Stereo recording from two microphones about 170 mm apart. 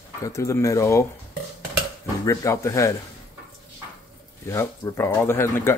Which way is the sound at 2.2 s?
15° left (ahead or behind).